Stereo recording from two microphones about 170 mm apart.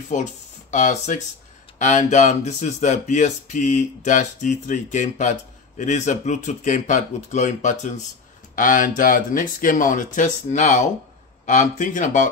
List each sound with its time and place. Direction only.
0.1 s speech: 45° left (ahead or behind)